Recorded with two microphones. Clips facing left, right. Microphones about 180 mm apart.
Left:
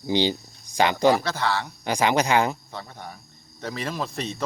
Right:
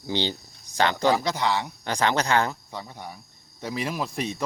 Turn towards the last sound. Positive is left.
turn(degrees=-10)  # may be behind; listen again after turning